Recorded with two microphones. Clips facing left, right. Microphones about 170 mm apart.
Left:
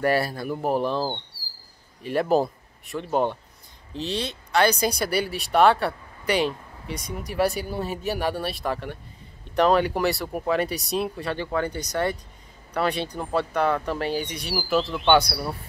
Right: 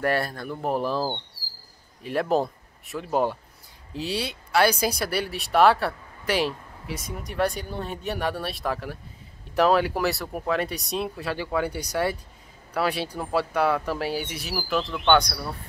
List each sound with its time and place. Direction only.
0.0 s speech: 5° left (ahead or behind)